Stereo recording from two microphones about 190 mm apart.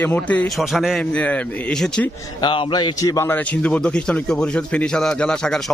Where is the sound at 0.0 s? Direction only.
10° left (ahead or behind).